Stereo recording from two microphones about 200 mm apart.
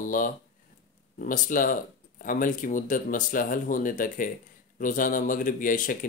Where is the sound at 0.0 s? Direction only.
40° left (ahead or behind).